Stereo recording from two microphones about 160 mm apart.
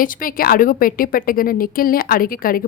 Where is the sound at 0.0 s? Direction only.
60° left (ahead or behind).